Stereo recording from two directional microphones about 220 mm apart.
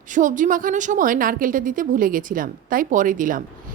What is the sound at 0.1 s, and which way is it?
A woman's voice, 35° right (ahead or behind).